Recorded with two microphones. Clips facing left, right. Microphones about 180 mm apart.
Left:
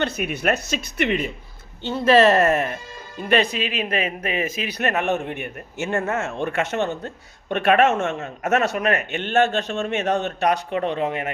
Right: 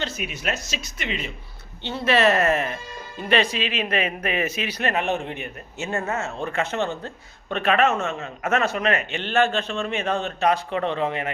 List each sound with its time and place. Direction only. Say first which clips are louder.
0.0 s speech: left 6 dB; 55° left (ahead or behind)
1.8 s a man's voice: left 5 dB; 40° left (ahead or behind)
4.8 s a man's voice: left 2 dB; 50° left (ahead or behind)